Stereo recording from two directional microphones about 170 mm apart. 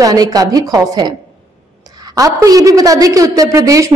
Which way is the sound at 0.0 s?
20° right (ahead or behind).